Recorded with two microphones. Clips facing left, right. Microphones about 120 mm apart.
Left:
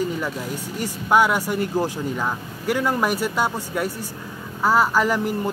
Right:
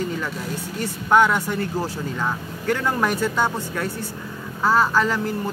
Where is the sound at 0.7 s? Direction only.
10° left (ahead or behind).